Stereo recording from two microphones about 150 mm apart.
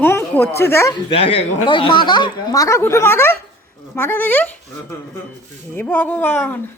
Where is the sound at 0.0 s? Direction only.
15° left (ahead or behind).